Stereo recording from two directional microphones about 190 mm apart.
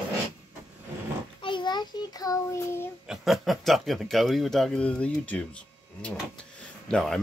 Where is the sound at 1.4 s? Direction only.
25° left (ahead or behind).